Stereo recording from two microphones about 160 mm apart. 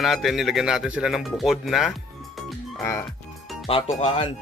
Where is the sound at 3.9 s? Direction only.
40° left (ahead or behind).